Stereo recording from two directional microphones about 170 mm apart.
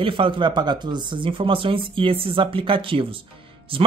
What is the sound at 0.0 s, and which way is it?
Speech, 30° right (ahead or behind).